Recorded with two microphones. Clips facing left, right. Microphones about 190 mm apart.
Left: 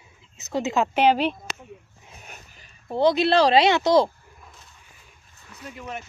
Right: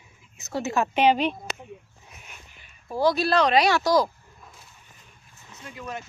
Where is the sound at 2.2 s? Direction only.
40° left (ahead or behind).